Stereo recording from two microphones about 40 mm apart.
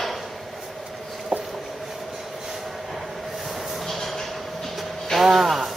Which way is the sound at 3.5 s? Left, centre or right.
Centre.